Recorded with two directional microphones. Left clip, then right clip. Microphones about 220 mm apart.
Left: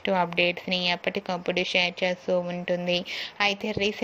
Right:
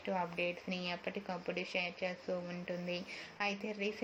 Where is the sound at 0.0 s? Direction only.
35° left (ahead or behind).